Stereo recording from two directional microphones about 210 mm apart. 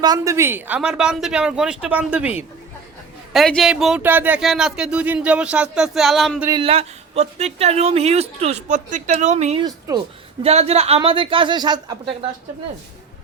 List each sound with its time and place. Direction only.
0.0 s speech: 15° right (ahead or behind); by 6.5 s centre (ahead or behind)
6.5 s speech: 25° right (ahead or behind)
9.6 s speech: 20° right (ahead or behind)
10.4 s speech: 30° right (ahead or behind)